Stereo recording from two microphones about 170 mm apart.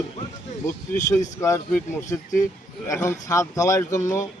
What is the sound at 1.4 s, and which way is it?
Speech, 15° left (ahead or behind).